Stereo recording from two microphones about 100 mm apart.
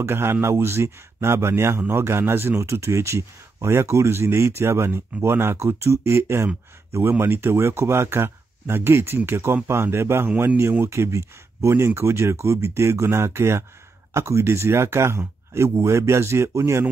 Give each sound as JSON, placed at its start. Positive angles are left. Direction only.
{"t": 0.0, "sound": "speech", "side_deg": -25}